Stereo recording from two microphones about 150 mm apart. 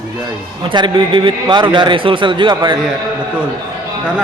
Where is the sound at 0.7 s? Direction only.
30° right (ahead or behind).